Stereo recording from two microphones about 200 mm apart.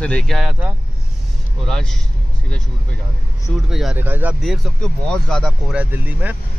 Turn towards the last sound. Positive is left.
turn(degrees=-5)  # may be behind; listen again after turning